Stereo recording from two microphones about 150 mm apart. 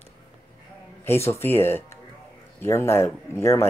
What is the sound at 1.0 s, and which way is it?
Speech, 15° left (ahead or behind).